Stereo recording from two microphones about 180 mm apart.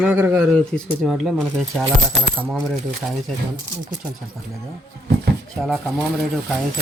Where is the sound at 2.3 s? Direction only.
5° right (ahead or behind).